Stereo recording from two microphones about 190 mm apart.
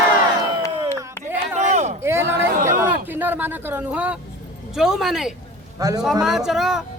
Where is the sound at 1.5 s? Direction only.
35° right (ahead or behind).